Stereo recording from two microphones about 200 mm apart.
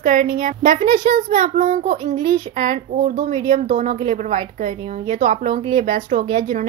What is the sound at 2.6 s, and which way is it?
A child's voice, 40° right (ahead or behind).